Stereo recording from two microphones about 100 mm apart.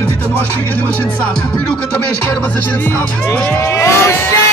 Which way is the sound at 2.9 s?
20° left (ahead or behind).